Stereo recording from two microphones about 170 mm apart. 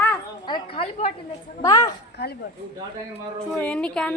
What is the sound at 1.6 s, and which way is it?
Speech, 20° left (ahead or behind).